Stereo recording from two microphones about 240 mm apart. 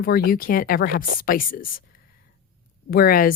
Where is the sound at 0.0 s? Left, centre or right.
Left.